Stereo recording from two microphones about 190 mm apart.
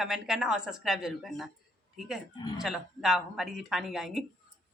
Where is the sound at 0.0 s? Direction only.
5° right (ahead or behind).